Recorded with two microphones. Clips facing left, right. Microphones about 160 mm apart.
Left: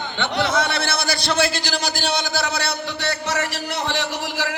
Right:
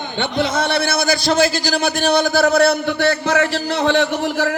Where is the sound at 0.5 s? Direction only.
55° right (ahead or behind).